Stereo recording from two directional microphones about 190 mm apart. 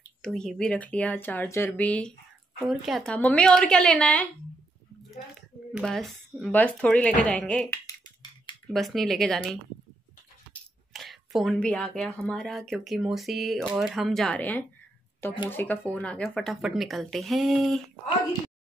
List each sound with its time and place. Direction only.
0.2 s speech: 5° left (ahead or behind)
5.7 s speech: centre (ahead or behind)
7.8 s a sound: 25° left (ahead or behind)
8.7 s speech: centre (ahead or behind)
10.9 s speech: centre (ahead or behind)